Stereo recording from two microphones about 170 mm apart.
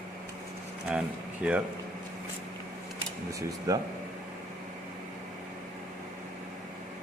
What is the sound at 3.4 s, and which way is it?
Speech, 20° right (ahead or behind).